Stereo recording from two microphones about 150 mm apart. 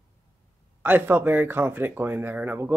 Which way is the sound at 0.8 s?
15° right (ahead or behind).